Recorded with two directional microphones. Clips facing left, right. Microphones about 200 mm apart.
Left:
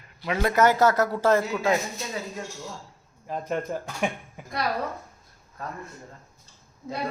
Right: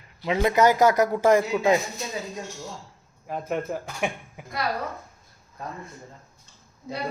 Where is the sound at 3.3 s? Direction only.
5° right (ahead or behind).